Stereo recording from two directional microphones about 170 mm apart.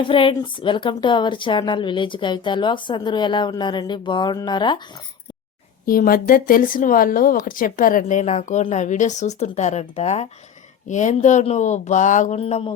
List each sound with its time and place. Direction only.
0.0 s speech: 30° left (ahead or behind)
5.8 s speech: 60° left (ahead or behind); by 12.7 s 35° left (ahead or behind)